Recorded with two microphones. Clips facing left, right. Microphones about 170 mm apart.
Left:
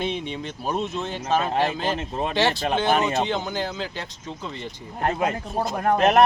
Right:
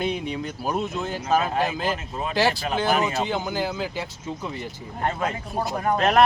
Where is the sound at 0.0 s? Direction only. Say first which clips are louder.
Right 1 dB; 5° right (ahead or behind).